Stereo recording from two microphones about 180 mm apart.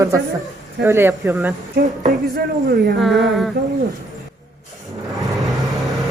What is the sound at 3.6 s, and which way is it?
Speech, 70° right (ahead or behind).